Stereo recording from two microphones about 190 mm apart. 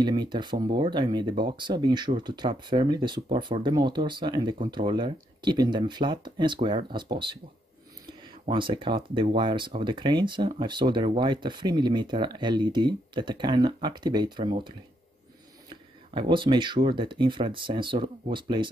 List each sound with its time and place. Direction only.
0.0 s speech: 25° right (ahead or behind)
15.7 s speech: 25° right (ahead or behind)